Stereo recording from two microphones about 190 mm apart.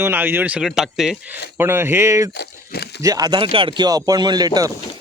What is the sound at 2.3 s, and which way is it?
Speech, 60° left (ahead or behind).